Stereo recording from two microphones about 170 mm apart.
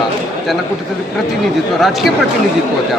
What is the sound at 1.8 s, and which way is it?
Speech, centre (ahead or behind).